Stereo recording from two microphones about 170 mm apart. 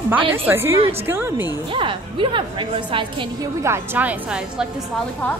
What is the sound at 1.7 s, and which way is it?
A woman's voice, 30° right (ahead or behind).